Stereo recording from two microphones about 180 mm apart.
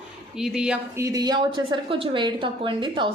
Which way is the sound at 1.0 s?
20° right (ahead or behind).